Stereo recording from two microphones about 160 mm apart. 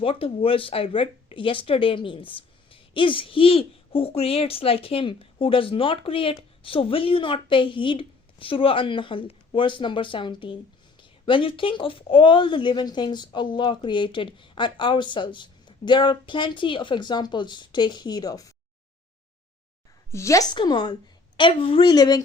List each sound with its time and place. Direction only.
0.0 s a woman's voice: 35° left (ahead or behind)
20.1 s a woman's voice: 20° left (ahead or behind)